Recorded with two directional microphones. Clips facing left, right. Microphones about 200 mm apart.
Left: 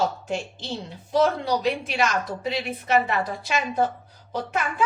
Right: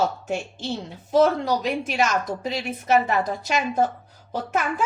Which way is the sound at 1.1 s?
45° right (ahead or behind).